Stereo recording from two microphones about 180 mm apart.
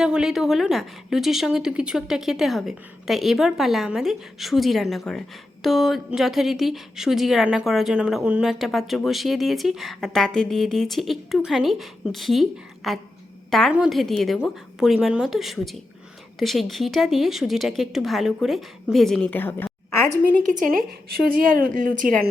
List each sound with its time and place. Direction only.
0.0 s a woman's voice: 5° right (ahead or behind); by 20.0 s 10° left (ahead or behind)
20.5 s speech: 45° right (ahead or behind)